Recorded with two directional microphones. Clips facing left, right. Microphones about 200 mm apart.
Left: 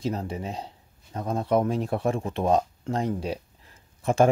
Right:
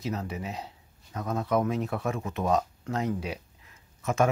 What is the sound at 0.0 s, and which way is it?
Speech, 30° left (ahead or behind).